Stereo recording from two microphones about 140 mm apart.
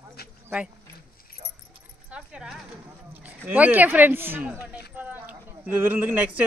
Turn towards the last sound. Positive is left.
turn(degrees=-10)  # may be behind; listen again after turning